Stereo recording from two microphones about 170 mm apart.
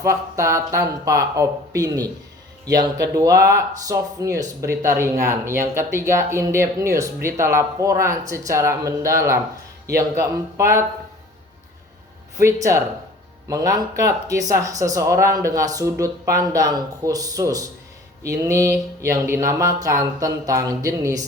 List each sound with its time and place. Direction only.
0.0 s speech: 20° right (ahead or behind)
3.2 s speech: 20° right (ahead or behind)
10.2 s speech: 15° right (ahead or behind)
12.4 s speech: 15° right (ahead or behind)